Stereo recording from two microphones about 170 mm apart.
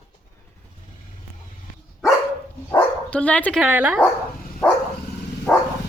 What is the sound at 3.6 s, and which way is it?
Speech, 10° right (ahead or behind).